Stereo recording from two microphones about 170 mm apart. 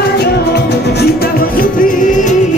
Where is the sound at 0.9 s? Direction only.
65° left (ahead or behind).